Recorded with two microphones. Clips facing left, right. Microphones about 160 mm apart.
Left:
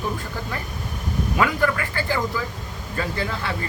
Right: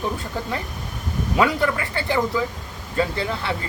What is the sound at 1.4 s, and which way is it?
Speech, 20° right (ahead or behind).